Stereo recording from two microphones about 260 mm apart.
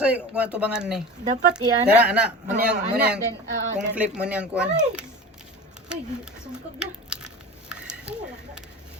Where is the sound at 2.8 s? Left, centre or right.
Right.